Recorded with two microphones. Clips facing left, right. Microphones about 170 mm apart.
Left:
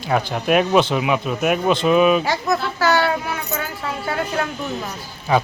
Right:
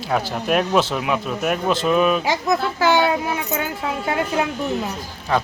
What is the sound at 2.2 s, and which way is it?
Speech, 15° right (ahead or behind).